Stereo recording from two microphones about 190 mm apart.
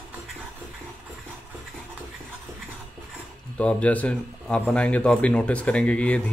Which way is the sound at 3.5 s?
5° left (ahead or behind).